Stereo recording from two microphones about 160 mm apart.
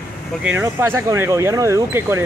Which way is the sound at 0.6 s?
15° right (ahead or behind).